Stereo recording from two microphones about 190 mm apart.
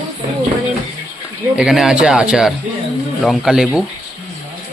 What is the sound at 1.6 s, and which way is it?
Speech, centre (ahead or behind).